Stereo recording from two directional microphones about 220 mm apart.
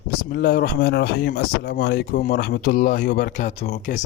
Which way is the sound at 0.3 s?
40° left (ahead or behind).